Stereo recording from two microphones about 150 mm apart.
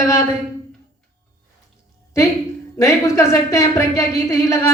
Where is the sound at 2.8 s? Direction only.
20° left (ahead or behind).